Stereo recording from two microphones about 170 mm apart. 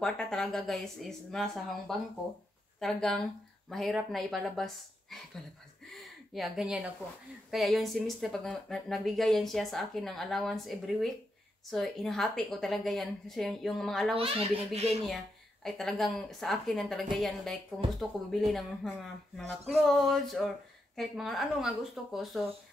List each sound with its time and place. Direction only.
0.0 s speech: 5° left (ahead or behind)
5.9 s a sound: centre (ahead or behind)
7.5 s speech: centre (ahead or behind)
14.1 s a child's voice: 35° right (ahead or behind)
15.6 s speech: centre (ahead or behind)